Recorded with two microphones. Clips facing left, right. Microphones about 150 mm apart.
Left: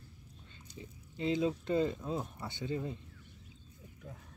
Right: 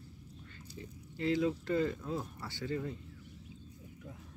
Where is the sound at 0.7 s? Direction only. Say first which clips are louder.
Even; 20° left (ahead or behind).